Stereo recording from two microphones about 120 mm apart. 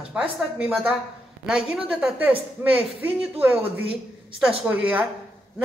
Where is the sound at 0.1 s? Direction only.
10° right (ahead or behind).